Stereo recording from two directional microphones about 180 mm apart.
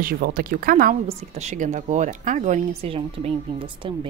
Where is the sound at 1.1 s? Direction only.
40° right (ahead or behind).